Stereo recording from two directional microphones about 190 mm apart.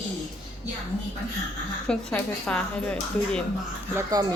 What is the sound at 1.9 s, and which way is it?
Speech, 5° left (ahead or behind).